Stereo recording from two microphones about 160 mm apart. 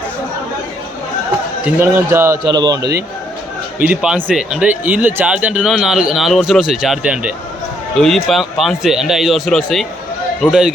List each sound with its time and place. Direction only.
1.6 s a man's voice: 15° right (ahead or behind)
2.5 s speech: 25° right (ahead or behind)
3.8 s speech: 5° right (ahead or behind)